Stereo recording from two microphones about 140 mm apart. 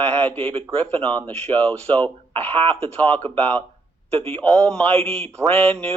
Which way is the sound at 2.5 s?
40° right (ahead or behind).